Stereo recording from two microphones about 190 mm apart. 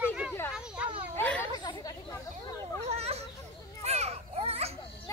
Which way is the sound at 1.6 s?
20° left (ahead or behind).